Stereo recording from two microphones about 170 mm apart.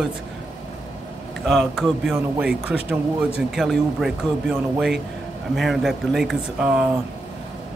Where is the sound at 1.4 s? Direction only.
Centre (ahead or behind).